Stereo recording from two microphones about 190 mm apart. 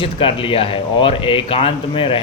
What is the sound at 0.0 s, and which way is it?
Speech, 30° left (ahead or behind).